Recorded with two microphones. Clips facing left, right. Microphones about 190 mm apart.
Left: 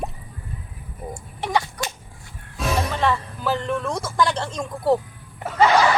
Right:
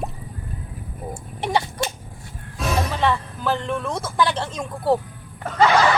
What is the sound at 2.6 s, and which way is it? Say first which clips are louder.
Speech: even; centre (ahead or behind).